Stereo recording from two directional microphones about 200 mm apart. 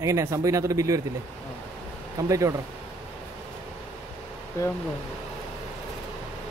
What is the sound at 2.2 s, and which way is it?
Speech, 15° right (ahead or behind).